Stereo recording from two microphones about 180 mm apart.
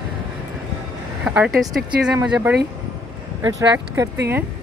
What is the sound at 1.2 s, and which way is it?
Speech, 5° right (ahead or behind).